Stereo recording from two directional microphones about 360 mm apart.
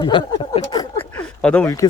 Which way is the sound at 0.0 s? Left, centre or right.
Centre.